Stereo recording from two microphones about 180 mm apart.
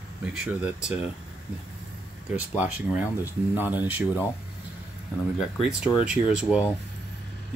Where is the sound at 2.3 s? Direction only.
5° right (ahead or behind).